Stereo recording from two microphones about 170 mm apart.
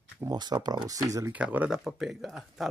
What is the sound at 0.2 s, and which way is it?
Speech, 25° right (ahead or behind).